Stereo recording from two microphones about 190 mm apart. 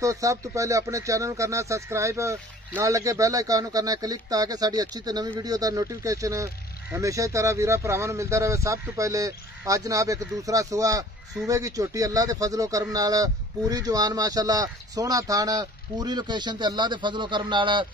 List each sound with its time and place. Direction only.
0.0 s speech: 15° right (ahead or behind)